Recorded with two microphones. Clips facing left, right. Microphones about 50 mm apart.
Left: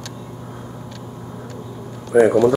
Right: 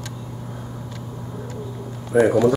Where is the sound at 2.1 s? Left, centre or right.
Centre.